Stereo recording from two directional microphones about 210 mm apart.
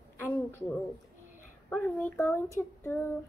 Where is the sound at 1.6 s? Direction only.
5° left (ahead or behind).